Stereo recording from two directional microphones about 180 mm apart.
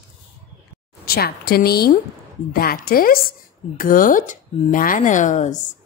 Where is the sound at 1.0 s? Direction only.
60° left (ahead or behind).